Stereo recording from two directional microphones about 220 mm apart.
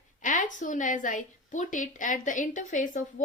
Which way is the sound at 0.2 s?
35° left (ahead or behind).